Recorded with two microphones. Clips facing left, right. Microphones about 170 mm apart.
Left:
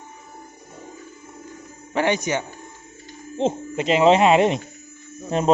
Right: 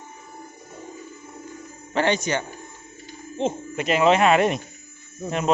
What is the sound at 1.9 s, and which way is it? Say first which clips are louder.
Speech: left 1 dB; 10° left (ahead or behind).